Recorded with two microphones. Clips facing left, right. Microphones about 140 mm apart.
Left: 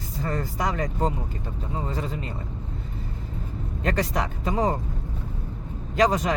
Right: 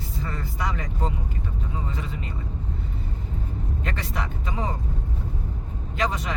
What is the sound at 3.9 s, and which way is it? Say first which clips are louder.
Speech: left 9 dB; 40° left (ahead or behind).